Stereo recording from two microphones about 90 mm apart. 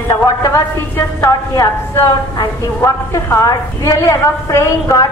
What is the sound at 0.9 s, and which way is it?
Speech, 30° left (ahead or behind).